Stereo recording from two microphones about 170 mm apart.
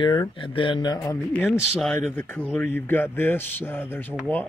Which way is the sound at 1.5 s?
Centre (ahead or behind).